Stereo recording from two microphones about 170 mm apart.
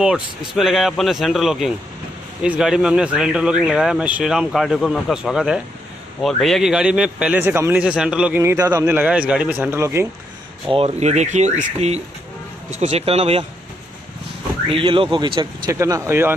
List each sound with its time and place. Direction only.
0.6 s speech: centre (ahead or behind)
10.7 s speech: 40° right (ahead or behind)
14.7 s speech: 30° right (ahead or behind)
15.7 s speech: 15° right (ahead or behind)